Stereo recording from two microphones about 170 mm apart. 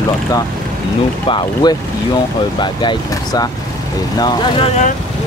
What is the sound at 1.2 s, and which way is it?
Speech, 30° left (ahead or behind).